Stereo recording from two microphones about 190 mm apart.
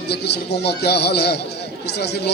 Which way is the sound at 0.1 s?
60° left (ahead or behind).